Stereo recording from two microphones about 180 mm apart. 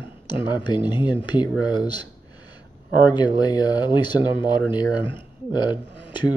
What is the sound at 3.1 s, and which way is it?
Speech, 25° left (ahead or behind).